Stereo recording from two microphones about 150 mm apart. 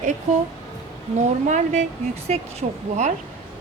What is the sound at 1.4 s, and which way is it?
Speech, 50° right (ahead or behind).